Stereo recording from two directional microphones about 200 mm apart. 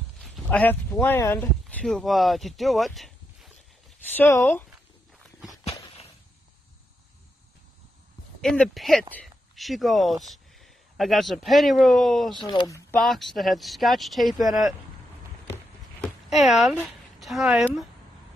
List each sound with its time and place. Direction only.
0.2 s a man's voice: 5° left (ahead or behind)
5.4 s walk: centre (ahead or behind)
5.7 s walk: 30° left (ahead or behind)
8.4 s speech: centre (ahead or behind)
12.4 s speech: 20° left (ahead or behind)
13.0 s speech: centre (ahead or behind)
16.0 s speech: centre (ahead or behind)